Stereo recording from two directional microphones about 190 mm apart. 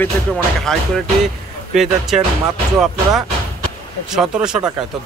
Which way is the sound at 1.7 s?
Centre (ahead or behind).